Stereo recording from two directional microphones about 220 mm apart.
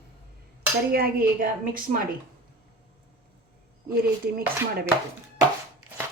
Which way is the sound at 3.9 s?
45° right (ahead or behind).